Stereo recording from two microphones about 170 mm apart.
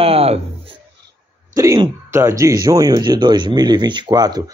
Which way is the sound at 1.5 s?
20° right (ahead or behind).